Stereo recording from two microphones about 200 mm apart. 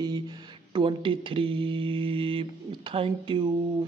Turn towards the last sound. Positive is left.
turn(degrees=-25)  # may be behind; listen again after turning